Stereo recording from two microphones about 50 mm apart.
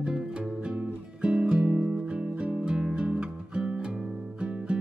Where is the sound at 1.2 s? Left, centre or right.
Right.